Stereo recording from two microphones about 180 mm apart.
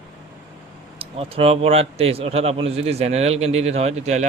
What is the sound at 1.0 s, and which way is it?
Speech, 35° right (ahead or behind).